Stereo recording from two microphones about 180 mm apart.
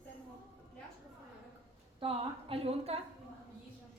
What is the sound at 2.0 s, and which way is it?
A woman's voice, 30° right (ahead or behind).